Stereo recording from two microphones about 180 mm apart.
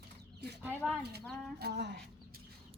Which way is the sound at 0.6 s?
10° right (ahead or behind).